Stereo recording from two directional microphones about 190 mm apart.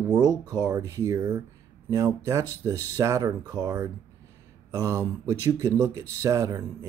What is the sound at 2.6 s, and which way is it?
Speech, 15° right (ahead or behind).